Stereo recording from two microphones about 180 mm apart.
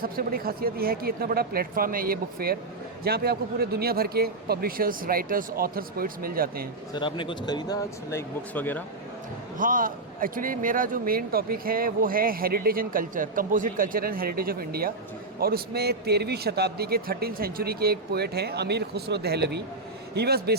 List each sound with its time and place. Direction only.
0.0 s a man's voice: 55° right (ahead or behind)
6.9 s speech: 25° left (ahead or behind); by 8.8 s 10° left (ahead or behind)
9.6 s a man's voice: 50° right (ahead or behind)